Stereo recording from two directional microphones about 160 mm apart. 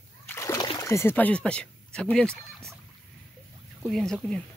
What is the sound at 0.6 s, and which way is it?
Speech, 20° left (ahead or behind).